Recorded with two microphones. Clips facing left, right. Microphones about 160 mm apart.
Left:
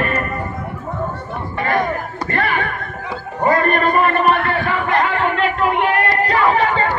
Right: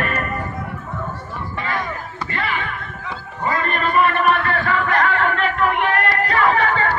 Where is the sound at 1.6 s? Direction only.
55° left (ahead or behind).